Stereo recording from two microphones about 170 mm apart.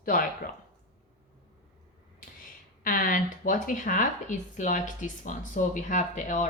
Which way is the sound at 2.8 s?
55° left (ahead or behind).